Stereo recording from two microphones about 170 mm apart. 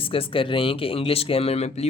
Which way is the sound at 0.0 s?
30° left (ahead or behind).